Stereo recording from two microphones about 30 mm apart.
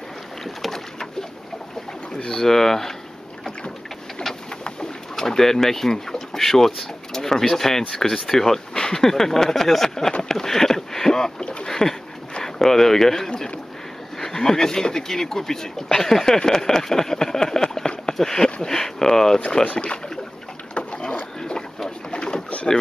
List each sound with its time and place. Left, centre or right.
2.2 s speech: centre
5.1 s speech: centre
11.6 s a sound: centre
12.5 s speech: centre
19.6 s speech: left
22.1 s pigeon: left